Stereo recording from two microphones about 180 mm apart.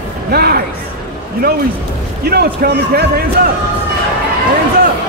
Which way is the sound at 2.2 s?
60° right (ahead or behind).